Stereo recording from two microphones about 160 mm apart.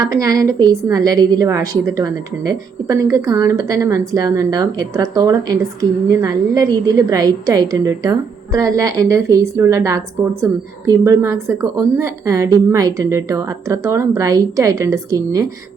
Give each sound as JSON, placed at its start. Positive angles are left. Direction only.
{"t": 0.0, "sound": "a woman's voice", "side_deg": -20}